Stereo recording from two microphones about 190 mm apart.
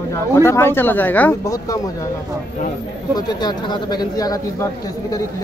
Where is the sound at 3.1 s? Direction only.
20° left (ahead or behind).